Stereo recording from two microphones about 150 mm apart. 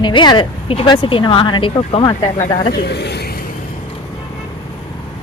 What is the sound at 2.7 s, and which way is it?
Speech, 90° left.